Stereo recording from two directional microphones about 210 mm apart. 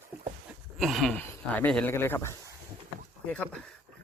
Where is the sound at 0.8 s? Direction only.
Centre (ahead or behind).